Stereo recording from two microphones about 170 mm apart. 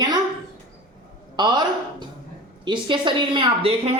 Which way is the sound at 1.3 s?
25° right (ahead or behind).